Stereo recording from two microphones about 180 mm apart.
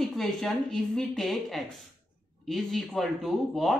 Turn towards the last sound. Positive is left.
turn(degrees=0)  # may be behind; listen again after turning